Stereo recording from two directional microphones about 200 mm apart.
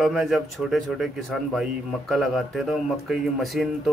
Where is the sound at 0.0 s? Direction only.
Centre (ahead or behind).